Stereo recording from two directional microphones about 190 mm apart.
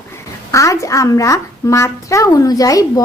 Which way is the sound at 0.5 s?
15° left (ahead or behind).